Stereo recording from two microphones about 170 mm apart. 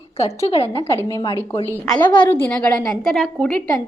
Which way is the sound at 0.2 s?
35° left (ahead or behind).